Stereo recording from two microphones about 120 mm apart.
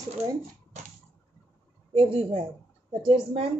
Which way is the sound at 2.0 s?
50° right (ahead or behind).